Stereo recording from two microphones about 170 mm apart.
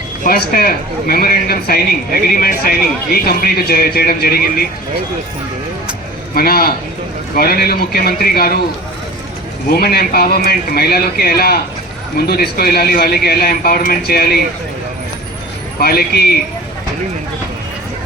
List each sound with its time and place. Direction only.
0.3 s speech: 60° left (ahead or behind)
6.3 s speech: 60° left (ahead or behind)
9.6 s speech: 65° left (ahead or behind)
15.8 s speech: 65° left (ahead or behind)